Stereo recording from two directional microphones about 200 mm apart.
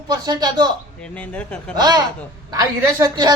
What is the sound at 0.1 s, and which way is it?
Speech, 20° right (ahead or behind).